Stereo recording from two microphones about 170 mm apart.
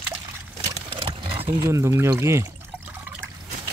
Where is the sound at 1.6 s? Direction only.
15° right (ahead or behind).